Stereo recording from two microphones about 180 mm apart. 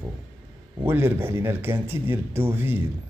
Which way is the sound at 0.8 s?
10° right (ahead or behind).